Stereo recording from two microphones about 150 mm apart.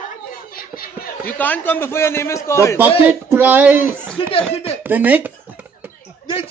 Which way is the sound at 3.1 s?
15° right (ahead or behind).